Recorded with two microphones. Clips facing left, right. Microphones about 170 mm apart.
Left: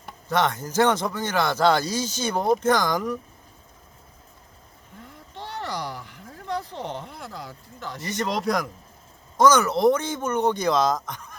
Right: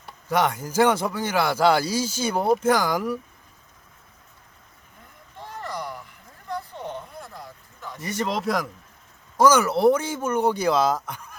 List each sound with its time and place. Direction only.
0.3 s speech: 10° right (ahead or behind)
5.4 s a sound: 85° left
8.1 s speech: 5° right (ahead or behind)